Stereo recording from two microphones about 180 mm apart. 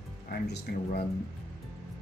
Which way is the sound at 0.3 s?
65° left (ahead or behind).